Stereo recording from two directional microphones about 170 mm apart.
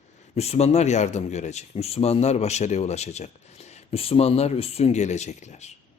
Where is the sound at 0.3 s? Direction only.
40° left (ahead or behind).